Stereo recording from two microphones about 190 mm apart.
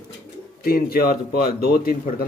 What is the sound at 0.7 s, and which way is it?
A man's voice, 50° left (ahead or behind).